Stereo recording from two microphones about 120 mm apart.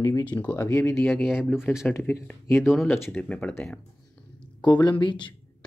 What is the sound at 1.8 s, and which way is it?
Speech, 20° left (ahead or behind).